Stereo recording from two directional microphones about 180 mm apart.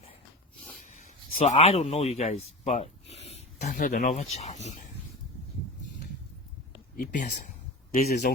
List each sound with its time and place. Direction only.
0.9 s speech: 45° left (ahead or behind)
6.9 s speech: 50° left (ahead or behind)